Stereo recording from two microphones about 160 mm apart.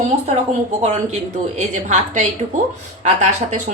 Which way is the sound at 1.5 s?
45° right (ahead or behind).